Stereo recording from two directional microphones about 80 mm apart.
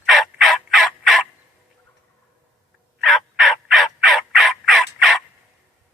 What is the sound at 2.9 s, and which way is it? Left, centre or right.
Gobble, centre.